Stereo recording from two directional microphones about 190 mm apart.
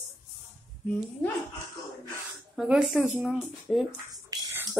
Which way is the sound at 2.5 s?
5° right (ahead or behind).